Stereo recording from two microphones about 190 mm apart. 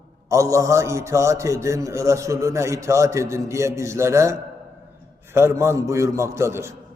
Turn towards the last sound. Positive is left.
turn(degrees=-15)  # may be behind; listen again after turning